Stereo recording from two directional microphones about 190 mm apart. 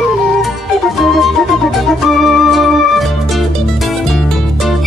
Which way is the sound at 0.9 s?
Centre (ahead or behind).